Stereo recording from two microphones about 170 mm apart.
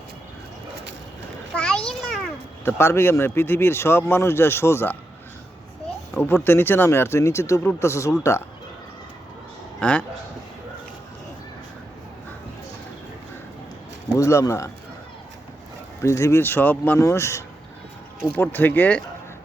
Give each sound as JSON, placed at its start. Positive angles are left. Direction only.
{"t": 1.5, "sound": "a sound", "side_deg": 5}
{"t": 2.6, "sound": "speech", "side_deg": 15}
{"t": 6.1, "sound": "speech", "side_deg": 15}
{"t": 9.8, "sound": "speech", "side_deg": 5}
{"t": 14.1, "sound": "speech", "side_deg": 15}
{"t": 16.0, "sound": "speech", "side_deg": 15}